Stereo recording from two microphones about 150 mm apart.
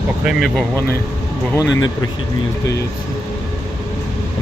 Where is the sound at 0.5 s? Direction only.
15° left (ahead or behind).